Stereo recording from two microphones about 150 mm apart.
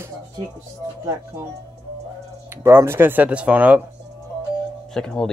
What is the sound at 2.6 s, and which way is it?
Speech, 15° right (ahead or behind).